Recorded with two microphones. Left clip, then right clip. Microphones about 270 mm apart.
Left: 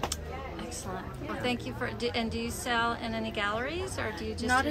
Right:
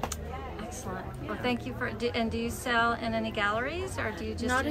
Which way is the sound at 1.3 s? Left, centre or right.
Centre.